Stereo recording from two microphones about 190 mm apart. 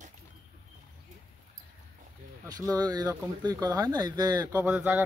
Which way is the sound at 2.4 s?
20° right (ahead or behind).